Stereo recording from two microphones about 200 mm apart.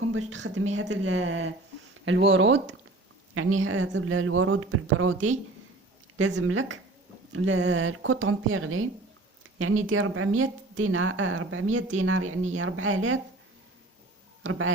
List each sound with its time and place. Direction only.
0.1 s a woman's voice: 85° right
3.3 s speech: 90° right
6.1 s speech: 80° right